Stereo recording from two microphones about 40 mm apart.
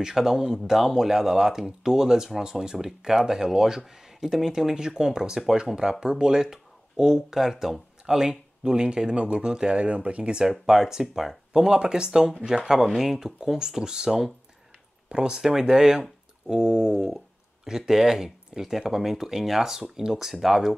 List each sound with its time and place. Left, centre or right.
0.0 s speech: centre
8.6 s speech: right
9.8 s speech: right
10.7 s speech: centre